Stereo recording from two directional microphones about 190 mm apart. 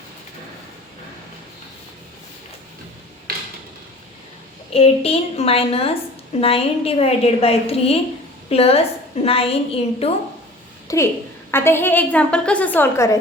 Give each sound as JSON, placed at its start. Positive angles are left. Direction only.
{"t": 3.3, "sound": "a sound", "side_deg": -55}
{"t": 4.7, "sound": "a woman's voice", "side_deg": 30}
{"t": 10.8, "sound": "a woman's voice", "side_deg": 15}